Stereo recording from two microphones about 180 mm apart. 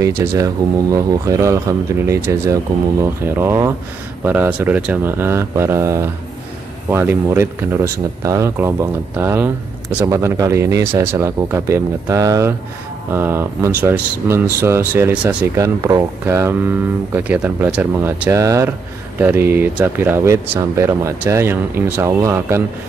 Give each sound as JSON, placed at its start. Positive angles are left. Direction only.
{"t": 0.2, "sound": "speech", "side_deg": -15}